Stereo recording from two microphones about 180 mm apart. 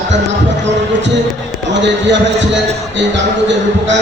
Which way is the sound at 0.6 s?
80° right.